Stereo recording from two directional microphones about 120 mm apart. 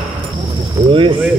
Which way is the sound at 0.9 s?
45° right (ahead or behind).